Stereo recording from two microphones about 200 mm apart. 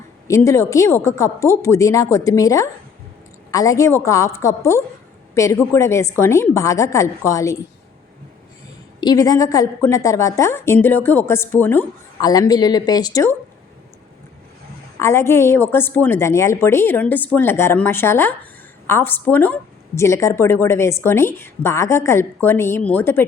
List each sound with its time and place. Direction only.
0.3 s a woman's voice: 15° left (ahead or behind)
9.0 s a woman's voice: 20° left (ahead or behind)
14.9 s a woman's voice: 15° left (ahead or behind)